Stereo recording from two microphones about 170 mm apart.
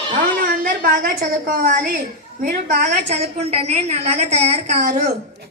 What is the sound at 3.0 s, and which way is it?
A woman's voice, 35° right (ahead or behind).